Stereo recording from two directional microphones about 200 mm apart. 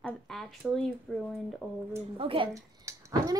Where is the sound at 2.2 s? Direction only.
25° right (ahead or behind).